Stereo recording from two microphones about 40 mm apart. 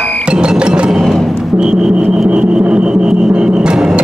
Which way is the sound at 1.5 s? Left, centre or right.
Right.